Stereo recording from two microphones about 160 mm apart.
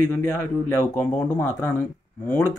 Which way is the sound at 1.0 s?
10° left (ahead or behind).